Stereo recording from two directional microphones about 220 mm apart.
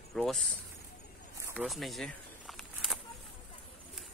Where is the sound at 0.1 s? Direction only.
Centre (ahead or behind).